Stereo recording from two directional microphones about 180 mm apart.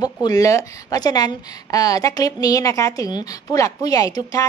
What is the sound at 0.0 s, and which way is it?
A woman's voice, 20° left (ahead or behind).